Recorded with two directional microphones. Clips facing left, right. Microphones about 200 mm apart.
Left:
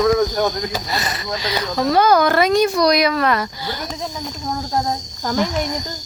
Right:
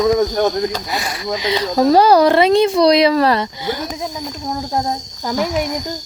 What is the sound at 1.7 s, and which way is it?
Speech, 40° right (ahead or behind).